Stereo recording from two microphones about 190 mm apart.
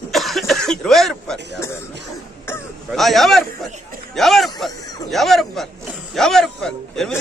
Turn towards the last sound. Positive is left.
turn(degrees=5)  # may be behind; listen again after turning